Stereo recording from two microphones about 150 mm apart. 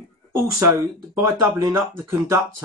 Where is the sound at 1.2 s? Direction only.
20° right (ahead or behind).